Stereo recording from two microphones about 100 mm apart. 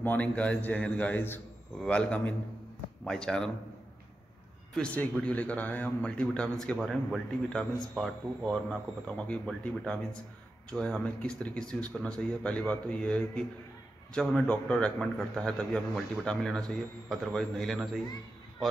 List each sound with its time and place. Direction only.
0.0 s speech: 15° left (ahead or behind)
1.8 s speech: 10° left (ahead or behind)
4.7 s a man's voice: 15° left (ahead or behind)